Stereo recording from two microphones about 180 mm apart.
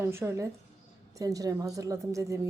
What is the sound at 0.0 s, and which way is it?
Speech, 15° right (ahead or behind).